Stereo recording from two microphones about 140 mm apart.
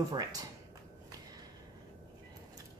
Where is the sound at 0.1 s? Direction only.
25° right (ahead or behind).